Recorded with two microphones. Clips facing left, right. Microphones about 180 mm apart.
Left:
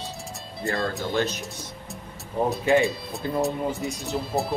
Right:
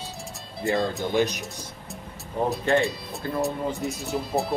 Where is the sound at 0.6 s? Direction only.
15° right (ahead or behind).